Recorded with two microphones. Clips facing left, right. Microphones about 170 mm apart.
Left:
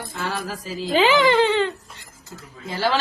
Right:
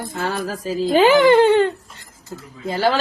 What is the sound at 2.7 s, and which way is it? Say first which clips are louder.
Speech: right 5 dB; 50° right (ahead or behind).